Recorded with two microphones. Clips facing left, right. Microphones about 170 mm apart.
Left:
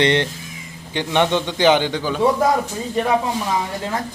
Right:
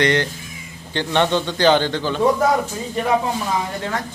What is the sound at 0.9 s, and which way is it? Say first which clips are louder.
A man's voice: even; 15° left (ahead or behind).